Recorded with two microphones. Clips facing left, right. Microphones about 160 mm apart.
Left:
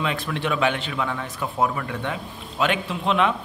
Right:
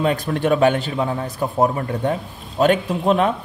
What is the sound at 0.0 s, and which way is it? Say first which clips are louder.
A man's voice: right 7 dB; 40° right (ahead or behind).